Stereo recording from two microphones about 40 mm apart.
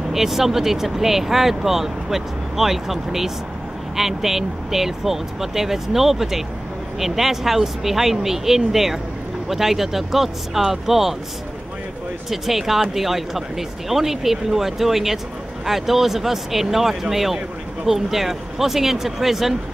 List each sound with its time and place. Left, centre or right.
0.1 s speech: centre
12.3 s speech: centre